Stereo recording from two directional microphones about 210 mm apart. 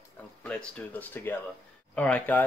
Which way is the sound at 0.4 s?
5° left (ahead or behind).